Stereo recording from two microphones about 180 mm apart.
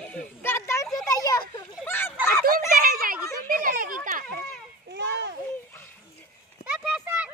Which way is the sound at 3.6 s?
50° right (ahead or behind).